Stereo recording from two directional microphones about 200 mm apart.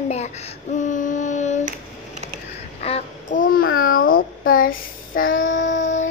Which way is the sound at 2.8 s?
35° left (ahead or behind).